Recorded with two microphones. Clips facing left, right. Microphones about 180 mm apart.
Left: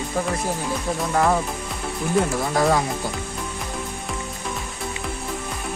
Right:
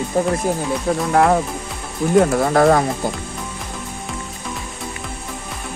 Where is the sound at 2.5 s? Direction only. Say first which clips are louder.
Right 5 dB; 60° right (ahead or behind).